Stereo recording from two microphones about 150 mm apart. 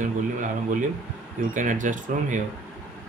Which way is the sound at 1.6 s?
60° right (ahead or behind).